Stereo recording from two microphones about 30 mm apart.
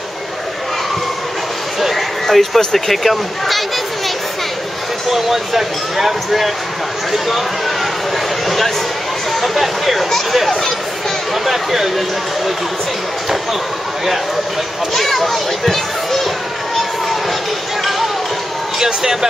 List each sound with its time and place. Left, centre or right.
1.8 s a sound: centre
2.2 s speech: centre
5.1 s speech: centre
7.1 s a sound: centre
8.5 s speech: centre
15.0 s speech: centre
18.8 s speech: centre